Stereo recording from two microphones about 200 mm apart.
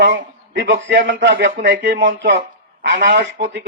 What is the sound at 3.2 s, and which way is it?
Speech, 60° right (ahead or behind).